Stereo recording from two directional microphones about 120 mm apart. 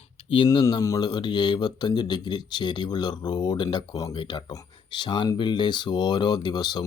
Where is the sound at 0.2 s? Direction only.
45° left (ahead or behind).